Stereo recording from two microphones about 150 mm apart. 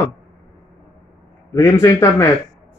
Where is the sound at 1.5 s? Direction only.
20° left (ahead or behind).